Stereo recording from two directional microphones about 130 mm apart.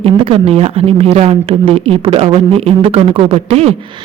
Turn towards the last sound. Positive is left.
turn(degrees=-50)  # may be behind; listen again after turning